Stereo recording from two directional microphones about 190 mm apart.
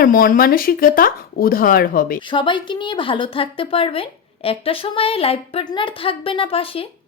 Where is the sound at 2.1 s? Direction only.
25° left (ahead or behind).